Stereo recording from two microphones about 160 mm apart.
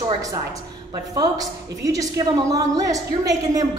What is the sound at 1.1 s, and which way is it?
A woman's voice, 25° right (ahead or behind).